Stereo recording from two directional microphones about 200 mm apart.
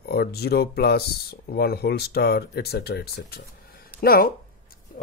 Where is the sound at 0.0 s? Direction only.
50° left (ahead or behind).